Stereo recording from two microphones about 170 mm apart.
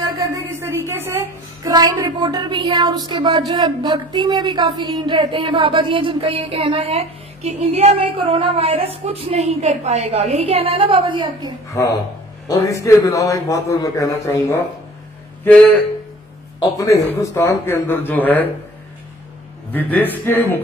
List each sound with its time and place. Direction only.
0.0 s speech: 20° right (ahead or behind)
11.7 s a man's voice: 20° left (ahead or behind)
16.6 s speech: 20° left (ahead or behind)
19.7 s speech: 10° left (ahead or behind)